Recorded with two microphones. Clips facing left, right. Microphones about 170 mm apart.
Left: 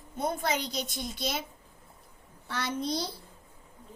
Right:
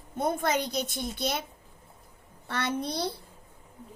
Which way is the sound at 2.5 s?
60° right (ahead or behind).